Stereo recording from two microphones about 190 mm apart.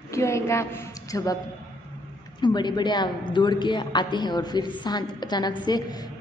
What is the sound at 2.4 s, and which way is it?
A woman's voice, 20° left (ahead or behind).